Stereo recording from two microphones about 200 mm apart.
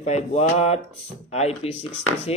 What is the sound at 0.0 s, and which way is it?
Speech, 35° left (ahead or behind).